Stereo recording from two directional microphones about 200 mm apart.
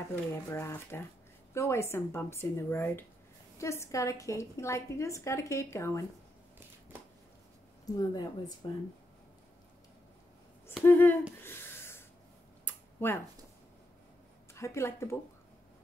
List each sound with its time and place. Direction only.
0.1 s a woman's voice: 10° left (ahead or behind)
7.8 s speech: 20° left (ahead or behind)
10.8 s a woman's voice: 10° left (ahead or behind)
11.4 s a sound: 10° left (ahead or behind)
14.5 s a woman's voice: 15° left (ahead or behind)